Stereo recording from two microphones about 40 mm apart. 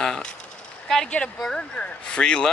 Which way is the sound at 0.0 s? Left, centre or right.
Centre.